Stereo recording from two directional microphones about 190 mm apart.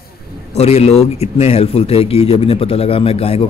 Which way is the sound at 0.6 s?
35° left (ahead or behind).